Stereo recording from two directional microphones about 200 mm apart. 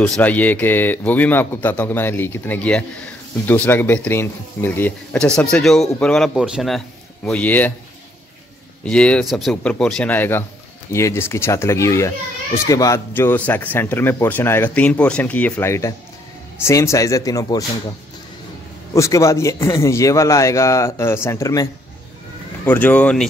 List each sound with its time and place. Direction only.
0.0 s speech: 5° left (ahead or behind)
8.8 s speech: 5° left (ahead or behind)
18.9 s speech: 15° left (ahead or behind)
22.7 s speech: 10° left (ahead or behind)